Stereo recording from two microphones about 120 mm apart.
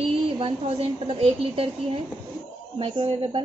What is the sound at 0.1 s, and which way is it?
A woman's voice, 50° right (ahead or behind).